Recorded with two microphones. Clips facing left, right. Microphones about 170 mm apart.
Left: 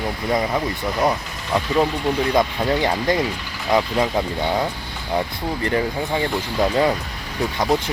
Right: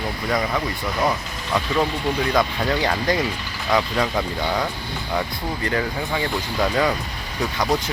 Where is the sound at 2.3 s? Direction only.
20° left (ahead or behind).